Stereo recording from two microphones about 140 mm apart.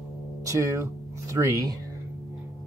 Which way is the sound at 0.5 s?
20° right (ahead or behind).